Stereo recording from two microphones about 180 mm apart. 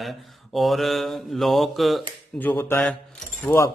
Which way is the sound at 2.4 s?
10° left (ahead or behind).